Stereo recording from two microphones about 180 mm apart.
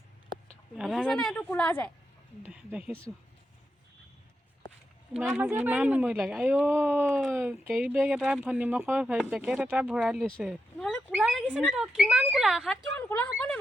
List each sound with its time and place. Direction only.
0.8 s speech: centre (ahead or behind)
2.4 s speech: 10° right (ahead or behind)
5.4 s speech: 10° right (ahead or behind)
7.1 s speech: centre (ahead or behind)
13.0 s a woman's voice: 10° left (ahead or behind)